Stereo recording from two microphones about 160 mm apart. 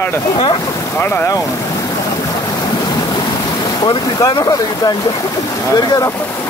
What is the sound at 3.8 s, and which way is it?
Speech, 25° left (ahead or behind).